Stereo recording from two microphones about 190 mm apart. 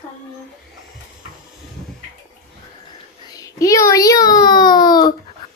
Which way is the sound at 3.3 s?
15° left (ahead or behind).